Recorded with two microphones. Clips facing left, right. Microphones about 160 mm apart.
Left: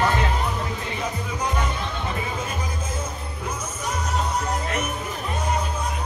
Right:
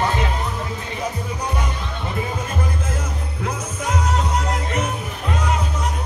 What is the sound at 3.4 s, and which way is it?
Music, 85° right.